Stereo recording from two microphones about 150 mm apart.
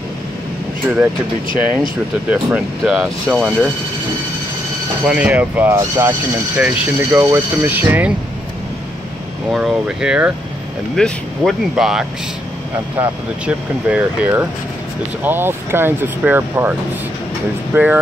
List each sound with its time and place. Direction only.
0.8 s speech: 10° right (ahead or behind)
2.3 s speech: 5° right (ahead or behind)
5.0 s speech: 10° right (ahead or behind)
9.5 s speech: 5° right (ahead or behind)
17.7 s speech: 15° right (ahead or behind)